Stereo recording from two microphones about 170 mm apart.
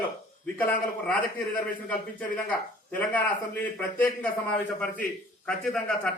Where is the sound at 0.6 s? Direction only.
10° left (ahead or behind).